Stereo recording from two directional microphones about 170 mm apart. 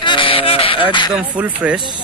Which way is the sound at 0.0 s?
30° left (ahead or behind).